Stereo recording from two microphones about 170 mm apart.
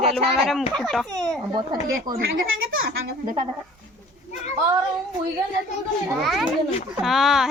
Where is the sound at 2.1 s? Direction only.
25° right (ahead or behind).